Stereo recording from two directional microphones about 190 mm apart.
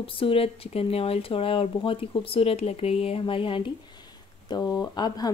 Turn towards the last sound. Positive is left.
turn(degrees=20)  # may be behind; listen again after turning